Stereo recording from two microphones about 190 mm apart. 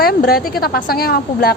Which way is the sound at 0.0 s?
50° left (ahead or behind).